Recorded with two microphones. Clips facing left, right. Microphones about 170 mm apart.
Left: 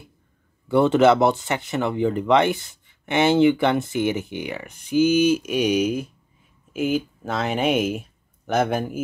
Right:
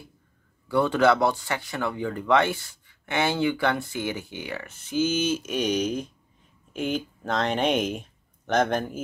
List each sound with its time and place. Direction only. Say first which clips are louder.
0.7 s speech: left 5 dB; 20° left (ahead or behind)